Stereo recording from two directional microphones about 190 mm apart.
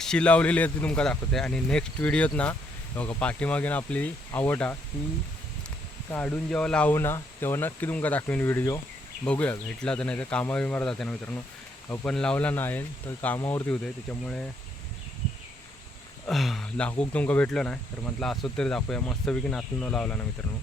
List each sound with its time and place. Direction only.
0.0 s speech: 5° left (ahead or behind)
6.1 s speech: 5° left (ahead or behind)
16.2 s a sound: centre (ahead or behind)
17.0 s speech: 5° left (ahead or behind)